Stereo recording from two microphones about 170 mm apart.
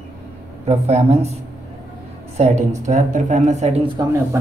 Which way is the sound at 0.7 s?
40° right (ahead or behind).